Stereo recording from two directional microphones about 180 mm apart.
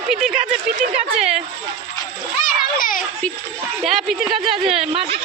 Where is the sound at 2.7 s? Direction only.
50° left (ahead or behind).